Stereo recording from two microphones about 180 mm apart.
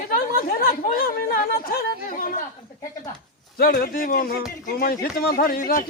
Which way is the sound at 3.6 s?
55° left (ahead or behind).